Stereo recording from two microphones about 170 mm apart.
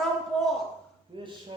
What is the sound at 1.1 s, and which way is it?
Speech, 30° right (ahead or behind).